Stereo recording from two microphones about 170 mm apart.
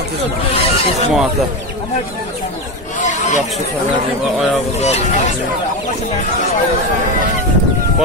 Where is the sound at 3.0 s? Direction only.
45° left (ahead or behind).